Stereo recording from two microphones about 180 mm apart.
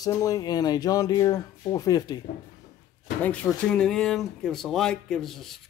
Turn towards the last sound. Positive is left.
turn(degrees=0)  # may be behind; listen again after turning